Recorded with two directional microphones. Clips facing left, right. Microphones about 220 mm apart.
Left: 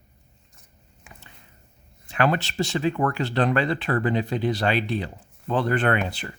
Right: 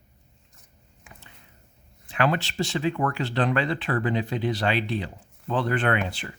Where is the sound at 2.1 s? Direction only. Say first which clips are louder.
Left 2 dB; 45° left (ahead or behind).